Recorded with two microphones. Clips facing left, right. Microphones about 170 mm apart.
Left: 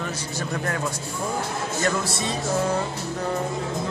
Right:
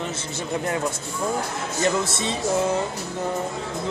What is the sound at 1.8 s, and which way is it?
Speech, 25° right (ahead or behind).